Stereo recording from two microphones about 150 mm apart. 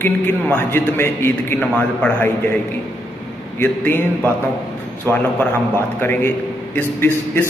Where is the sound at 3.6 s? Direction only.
15° left (ahead or behind).